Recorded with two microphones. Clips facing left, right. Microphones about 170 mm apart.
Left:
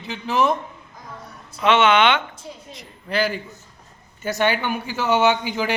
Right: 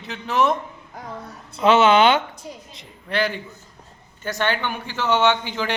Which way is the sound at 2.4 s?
15° right (ahead or behind).